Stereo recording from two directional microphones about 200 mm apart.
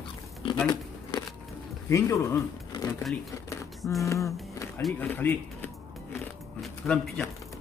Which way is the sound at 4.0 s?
15° left (ahead or behind).